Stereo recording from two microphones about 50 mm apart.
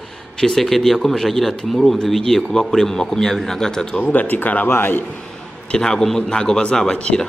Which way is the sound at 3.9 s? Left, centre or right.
Left.